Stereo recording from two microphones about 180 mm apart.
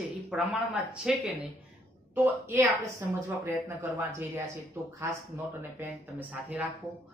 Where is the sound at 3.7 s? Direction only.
15° right (ahead or behind).